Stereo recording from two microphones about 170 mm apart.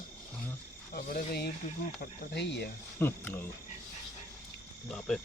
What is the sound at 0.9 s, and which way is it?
Speech, 60° left (ahead or behind).